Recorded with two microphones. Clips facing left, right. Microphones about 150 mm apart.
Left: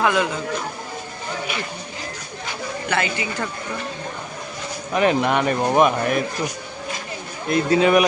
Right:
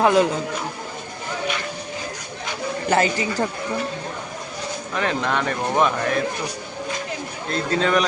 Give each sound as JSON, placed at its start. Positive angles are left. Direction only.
{"t": 0.0, "sound": "a woman's voice", "side_deg": -35}
{"t": 2.9, "sound": "a woman's voice", "side_deg": -40}
{"t": 4.9, "sound": "speech", "side_deg": 15}
{"t": 7.4, "sound": "speech", "side_deg": 10}